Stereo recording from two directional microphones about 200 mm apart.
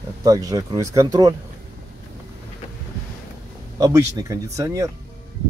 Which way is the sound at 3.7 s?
15° right (ahead or behind).